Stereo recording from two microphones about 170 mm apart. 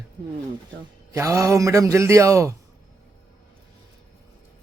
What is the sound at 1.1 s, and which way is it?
A man's voice, 20° right (ahead or behind).